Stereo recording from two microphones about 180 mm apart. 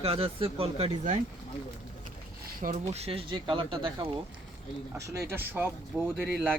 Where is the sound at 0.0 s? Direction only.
35° right (ahead or behind).